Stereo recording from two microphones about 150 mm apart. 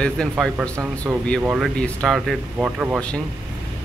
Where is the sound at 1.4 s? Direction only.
10° right (ahead or behind).